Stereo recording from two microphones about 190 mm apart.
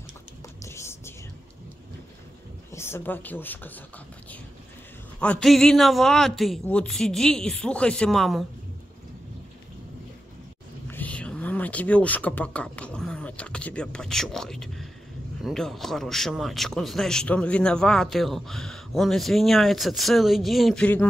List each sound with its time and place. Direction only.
0.7 s whispering: 15° left (ahead or behind)
2.7 s speech: 15° left (ahead or behind)
5.2 s speech: 5° left (ahead or behind)
10.9 s a sound: 10° left (ahead or behind)
15.4 s speech: centre (ahead or behind)